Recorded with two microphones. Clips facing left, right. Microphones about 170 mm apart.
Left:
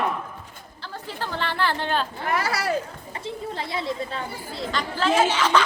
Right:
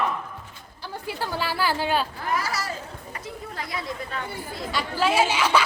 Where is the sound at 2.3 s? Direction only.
65° left (ahead or behind).